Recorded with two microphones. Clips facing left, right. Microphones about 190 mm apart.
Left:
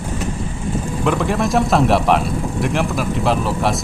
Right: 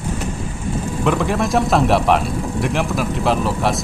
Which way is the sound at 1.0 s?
Centre (ahead or behind).